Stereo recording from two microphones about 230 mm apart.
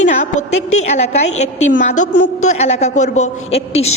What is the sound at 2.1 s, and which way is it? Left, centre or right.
Speech, left.